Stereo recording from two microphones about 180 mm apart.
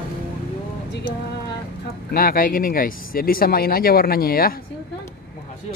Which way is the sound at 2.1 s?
55° left (ahead or behind).